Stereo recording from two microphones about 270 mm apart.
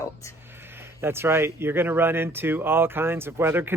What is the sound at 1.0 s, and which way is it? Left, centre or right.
Speech, centre.